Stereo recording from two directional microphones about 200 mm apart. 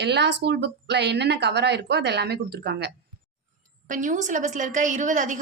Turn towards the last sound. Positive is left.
turn(degrees=-40)  # may be behind; listen again after turning